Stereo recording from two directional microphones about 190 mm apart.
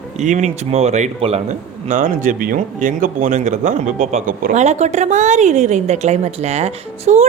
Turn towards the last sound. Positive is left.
turn(degrees=-35)  # may be behind; listen again after turning